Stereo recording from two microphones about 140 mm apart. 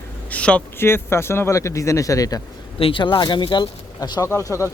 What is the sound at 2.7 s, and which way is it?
Speech, 40° left (ahead or behind).